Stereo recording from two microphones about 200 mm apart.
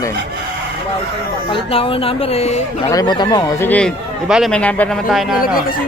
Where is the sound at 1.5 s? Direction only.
25° left (ahead or behind).